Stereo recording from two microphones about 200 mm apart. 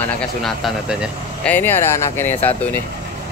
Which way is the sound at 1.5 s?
10° left (ahead or behind).